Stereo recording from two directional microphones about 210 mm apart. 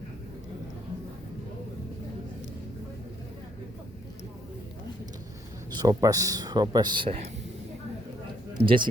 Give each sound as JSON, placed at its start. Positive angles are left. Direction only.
{"t": 5.7, "sound": "speech", "side_deg": -20}
{"t": 8.6, "sound": "speech", "side_deg": -25}